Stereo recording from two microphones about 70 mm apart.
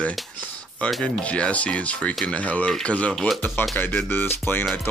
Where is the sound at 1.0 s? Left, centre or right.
Centre.